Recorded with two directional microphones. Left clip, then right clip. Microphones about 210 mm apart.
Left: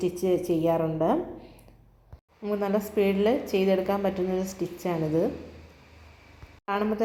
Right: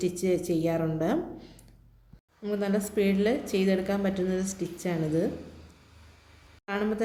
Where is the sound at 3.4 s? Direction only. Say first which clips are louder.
Left 3 dB; 35° right (ahead or behind).